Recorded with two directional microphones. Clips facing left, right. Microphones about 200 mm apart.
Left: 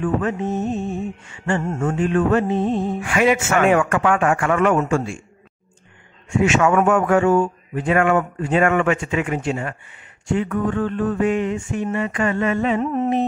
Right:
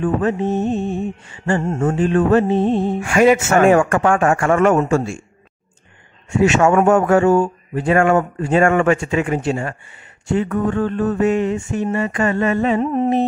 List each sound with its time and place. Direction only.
0.0 s speech: 35° right (ahead or behind)
3.0 s a man's voice: 45° right (ahead or behind)
6.4 s speech: 35° right (ahead or behind)